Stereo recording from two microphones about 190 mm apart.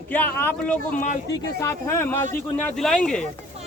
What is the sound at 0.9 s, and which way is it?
Speech, 40° left (ahead or behind).